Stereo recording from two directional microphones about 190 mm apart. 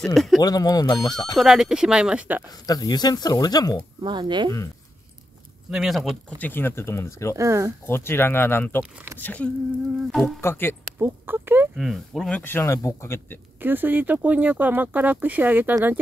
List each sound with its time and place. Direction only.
0.0 s speech: centre (ahead or behind)
0.4 s speech: 20° left (ahead or behind)
1.4 s speech: 5° right (ahead or behind)
2.6 s speech: 20° left (ahead or behind)
4.0 s speech: 25° right (ahead or behind)
5.7 s speech: centre (ahead or behind)
6.3 s speech: 10° left (ahead or behind)
7.3 s speech: 15° right (ahead or behind)
7.8 s speech: 10° left (ahead or behind)
11.0 s speech: 10° right (ahead or behind)
11.7 s speech: centre (ahead or behind)
13.6 s speech: 10° right (ahead or behind)